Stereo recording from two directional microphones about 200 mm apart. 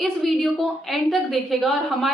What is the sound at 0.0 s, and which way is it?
A woman's voice, centre (ahead or behind).